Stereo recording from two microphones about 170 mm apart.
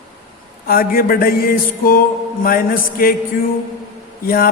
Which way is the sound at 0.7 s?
60° left (ahead or behind).